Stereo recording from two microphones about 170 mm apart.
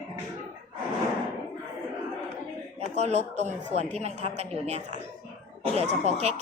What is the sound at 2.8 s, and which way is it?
A woman's voice, 40° right (ahead or behind).